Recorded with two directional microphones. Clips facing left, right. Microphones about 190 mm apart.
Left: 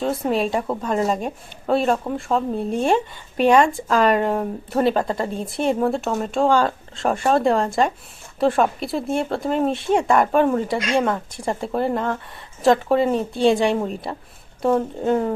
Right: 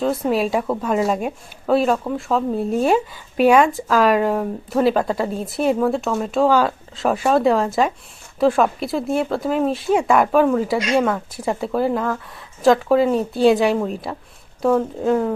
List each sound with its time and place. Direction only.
0.0 s a woman's voice: centre (ahead or behind)